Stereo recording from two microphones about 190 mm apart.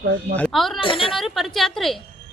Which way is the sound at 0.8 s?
25° left (ahead or behind).